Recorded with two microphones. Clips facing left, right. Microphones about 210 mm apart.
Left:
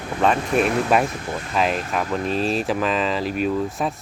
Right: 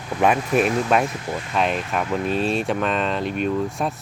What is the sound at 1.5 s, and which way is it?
Speech, centre (ahead or behind).